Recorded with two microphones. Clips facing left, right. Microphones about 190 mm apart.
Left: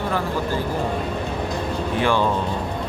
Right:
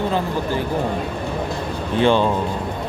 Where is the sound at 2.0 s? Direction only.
20° right (ahead or behind).